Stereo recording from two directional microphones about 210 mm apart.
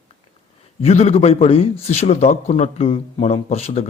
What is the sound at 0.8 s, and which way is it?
Speech, 30° left (ahead or behind).